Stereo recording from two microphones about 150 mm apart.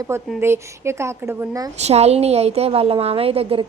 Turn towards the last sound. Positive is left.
turn(degrees=-40)  # may be behind; listen again after turning